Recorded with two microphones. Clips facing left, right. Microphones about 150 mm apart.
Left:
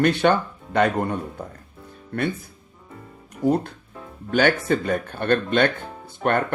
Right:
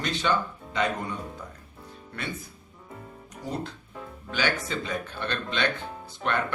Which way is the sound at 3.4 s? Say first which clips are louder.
Left 12 dB; 55° left (ahead or behind).